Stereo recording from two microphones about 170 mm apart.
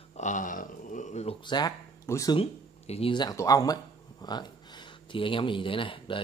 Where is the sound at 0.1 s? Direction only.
45° left (ahead or behind).